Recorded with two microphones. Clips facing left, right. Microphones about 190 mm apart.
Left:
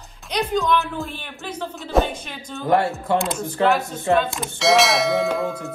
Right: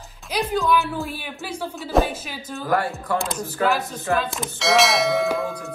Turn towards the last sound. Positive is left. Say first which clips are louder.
# left 1 dB
turn(degrees=0)  # may be behind; listen again after turning